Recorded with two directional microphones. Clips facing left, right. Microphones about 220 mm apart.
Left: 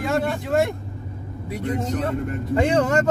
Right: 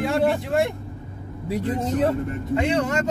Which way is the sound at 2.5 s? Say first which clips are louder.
Left 3 dB; 45° left (ahead or behind).